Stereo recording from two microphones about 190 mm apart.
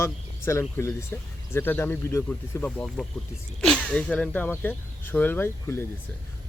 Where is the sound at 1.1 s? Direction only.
10° left (ahead or behind).